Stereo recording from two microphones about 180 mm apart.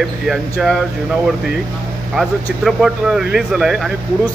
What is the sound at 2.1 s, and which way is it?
Speech, centre (ahead or behind).